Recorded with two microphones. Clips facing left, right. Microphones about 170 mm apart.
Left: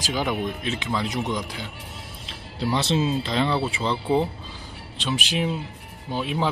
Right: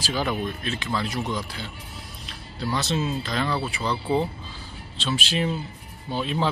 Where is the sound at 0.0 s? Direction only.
15° left (ahead or behind).